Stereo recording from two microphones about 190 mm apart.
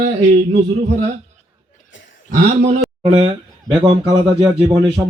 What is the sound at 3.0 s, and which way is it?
Speech, 30° right (ahead or behind).